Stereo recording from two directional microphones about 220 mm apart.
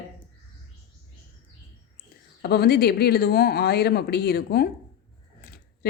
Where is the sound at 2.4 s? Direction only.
45° left (ahead or behind).